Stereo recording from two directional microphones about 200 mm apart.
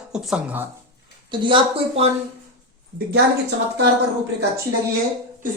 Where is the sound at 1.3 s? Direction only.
25° right (ahead or behind).